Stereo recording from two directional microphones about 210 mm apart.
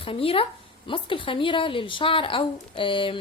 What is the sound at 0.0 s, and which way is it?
A woman's voice, 25° left (ahead or behind).